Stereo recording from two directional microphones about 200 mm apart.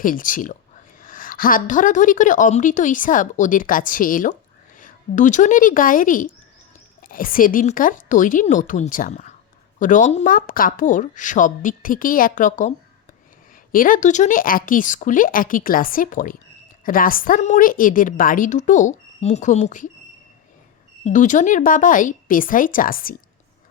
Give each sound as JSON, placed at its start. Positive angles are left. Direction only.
{"t": 0.0, "sound": "a woman's voice", "side_deg": 40}
{"t": 13.7, "sound": "a woman's voice", "side_deg": 40}
{"t": 21.0, "sound": "a woman's voice", "side_deg": 40}